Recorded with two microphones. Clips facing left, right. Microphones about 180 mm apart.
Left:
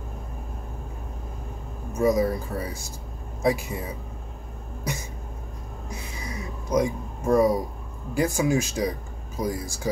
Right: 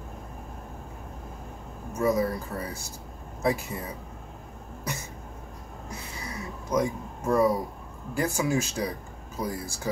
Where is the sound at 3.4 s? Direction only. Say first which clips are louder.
Left 3 dB; 15° left (ahead or behind).